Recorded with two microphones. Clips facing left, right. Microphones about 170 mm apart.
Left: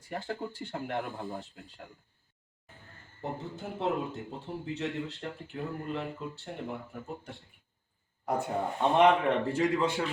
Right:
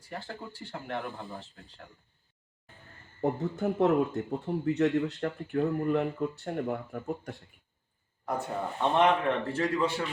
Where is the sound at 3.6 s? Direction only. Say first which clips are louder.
Right 8 dB; 65° right (ahead or behind).